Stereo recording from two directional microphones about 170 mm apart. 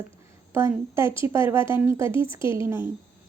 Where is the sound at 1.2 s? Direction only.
15° right (ahead or behind).